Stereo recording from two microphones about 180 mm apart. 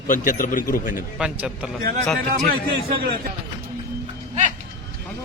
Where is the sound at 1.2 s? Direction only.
5° right (ahead or behind).